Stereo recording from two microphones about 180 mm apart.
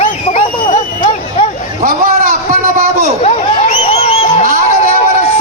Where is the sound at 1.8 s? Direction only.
50° right (ahead or behind).